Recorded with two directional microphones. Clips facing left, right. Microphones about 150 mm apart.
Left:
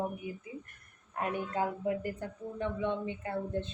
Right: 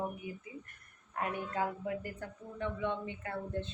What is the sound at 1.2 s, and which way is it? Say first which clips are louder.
A woman's voice: left 2 dB; 25° left (ahead or behind).